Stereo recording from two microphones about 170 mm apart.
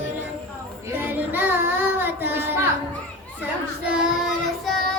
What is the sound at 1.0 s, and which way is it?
Child singing, 10° right (ahead or behind).